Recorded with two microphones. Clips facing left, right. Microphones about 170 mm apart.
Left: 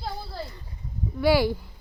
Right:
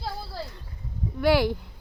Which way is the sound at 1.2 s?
Centre (ahead or behind).